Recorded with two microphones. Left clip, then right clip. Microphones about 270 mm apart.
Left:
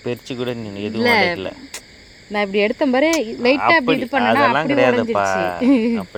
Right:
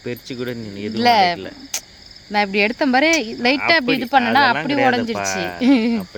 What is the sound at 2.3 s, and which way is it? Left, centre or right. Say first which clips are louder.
Speech: right 1 dB; right.